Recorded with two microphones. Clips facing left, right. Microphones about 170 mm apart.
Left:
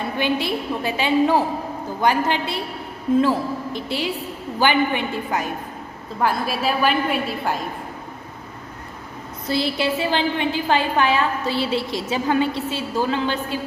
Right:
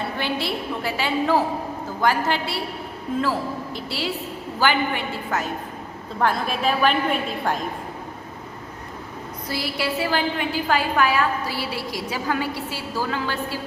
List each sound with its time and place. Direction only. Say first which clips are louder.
0.2 s a woman's voice: left 6 dB; 15° left (ahead or behind)
9.5 s a woman's voice: left 5 dB; 25° left (ahead or behind)